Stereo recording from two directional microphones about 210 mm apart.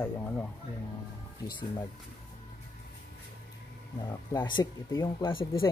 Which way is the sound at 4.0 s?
20° left (ahead or behind).